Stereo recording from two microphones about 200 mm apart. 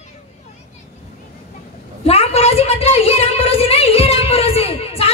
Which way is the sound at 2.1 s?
30° left (ahead or behind).